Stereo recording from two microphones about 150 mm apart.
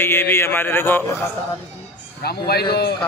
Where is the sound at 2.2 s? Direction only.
90° left.